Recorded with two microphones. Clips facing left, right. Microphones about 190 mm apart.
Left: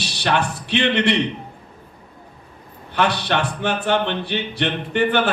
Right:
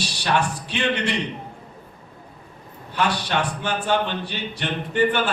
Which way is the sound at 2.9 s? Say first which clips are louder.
Left 3 dB; 65° left (ahead or behind).